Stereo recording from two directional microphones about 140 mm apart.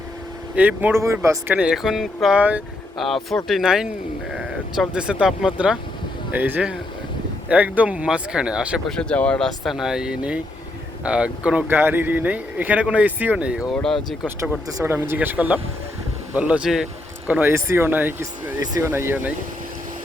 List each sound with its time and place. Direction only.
0.5 s speech: 10° right (ahead or behind)
1.5 s speech: 5° right (ahead or behind)
8.9 s speech: 5° left (ahead or behind)
9.6 s speech: 5° right (ahead or behind)
13.7 s speech: 5° left (ahead or behind)
14.3 s speech: 10° right (ahead or behind)